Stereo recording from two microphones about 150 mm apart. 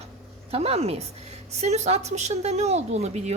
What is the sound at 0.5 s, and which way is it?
A woman's voice, 40° right (ahead or behind).